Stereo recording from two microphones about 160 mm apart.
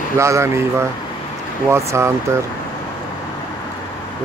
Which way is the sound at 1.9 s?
15° right (ahead or behind).